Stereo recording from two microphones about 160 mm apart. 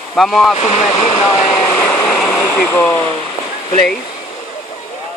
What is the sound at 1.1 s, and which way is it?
Speech, 35° left (ahead or behind).